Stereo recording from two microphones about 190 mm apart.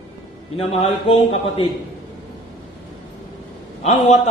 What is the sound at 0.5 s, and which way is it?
A man's voice, 30° left (ahead or behind).